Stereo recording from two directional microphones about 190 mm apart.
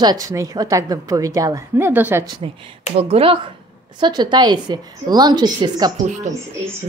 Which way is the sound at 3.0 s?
30° right (ahead or behind).